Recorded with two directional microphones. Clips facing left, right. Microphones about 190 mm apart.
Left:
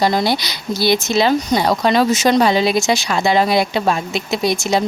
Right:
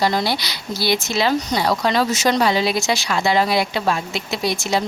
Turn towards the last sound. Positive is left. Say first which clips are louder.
# left 4 dB
turn(degrees=20)  # may be behind; listen again after turning